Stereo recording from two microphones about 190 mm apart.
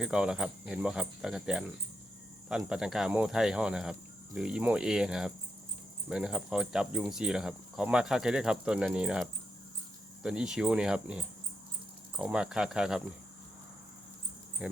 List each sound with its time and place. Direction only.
0.0 s speech: 5° right (ahead or behind)
14.6 s speech: 5° right (ahead or behind)